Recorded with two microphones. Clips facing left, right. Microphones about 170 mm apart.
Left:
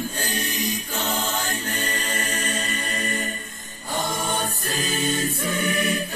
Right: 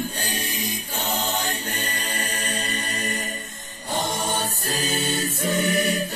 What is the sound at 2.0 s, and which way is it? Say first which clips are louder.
Music: left 2 dB; 35° right (ahead or behind).